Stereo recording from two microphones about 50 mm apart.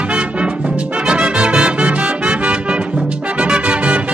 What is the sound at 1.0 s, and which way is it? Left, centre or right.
Music, centre.